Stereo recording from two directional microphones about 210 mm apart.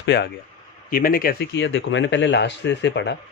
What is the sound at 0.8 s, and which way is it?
Speech, 40° left (ahead or behind).